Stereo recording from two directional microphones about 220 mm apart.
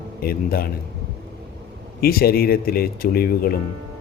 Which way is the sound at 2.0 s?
45° left (ahead or behind).